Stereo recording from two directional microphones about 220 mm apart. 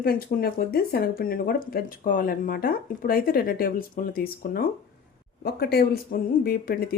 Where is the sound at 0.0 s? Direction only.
45° left (ahead or behind).